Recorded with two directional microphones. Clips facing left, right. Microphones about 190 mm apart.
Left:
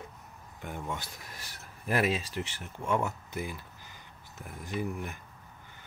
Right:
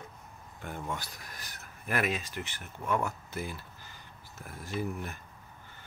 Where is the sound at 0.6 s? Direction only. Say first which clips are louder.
Even; 15° left (ahead or behind).